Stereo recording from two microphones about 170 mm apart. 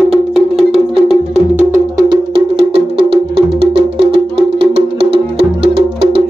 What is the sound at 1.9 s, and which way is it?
Music, 30° right (ahead or behind).